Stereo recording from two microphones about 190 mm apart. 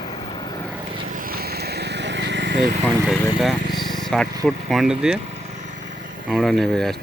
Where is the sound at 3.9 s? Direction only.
Centre (ahead or behind).